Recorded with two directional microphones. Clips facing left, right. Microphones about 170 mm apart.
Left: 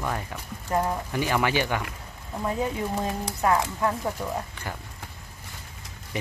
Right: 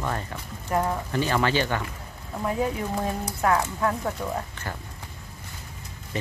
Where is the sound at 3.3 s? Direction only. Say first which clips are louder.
Even; 15° left (ahead or behind).